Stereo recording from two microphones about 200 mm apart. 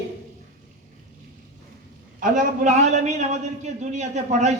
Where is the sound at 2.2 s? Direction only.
40° right (ahead or behind).